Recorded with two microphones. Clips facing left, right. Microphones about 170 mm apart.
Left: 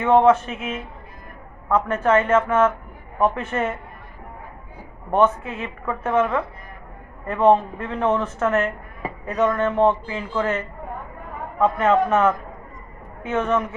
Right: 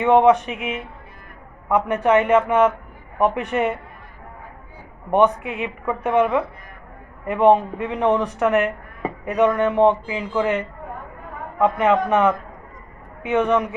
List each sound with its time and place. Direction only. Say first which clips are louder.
0.0 s speech: right 1 dB; 15° right (ahead or behind)
2.0 s speech: right 2 dB; 15° right (ahead or behind)
5.1 s speech: right 2 dB; 15° right (ahead or behind)
11.6 s speech: even; 15° right (ahead or behind)